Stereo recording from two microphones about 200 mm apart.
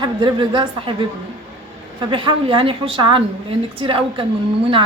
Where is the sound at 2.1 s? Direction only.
25° right (ahead or behind).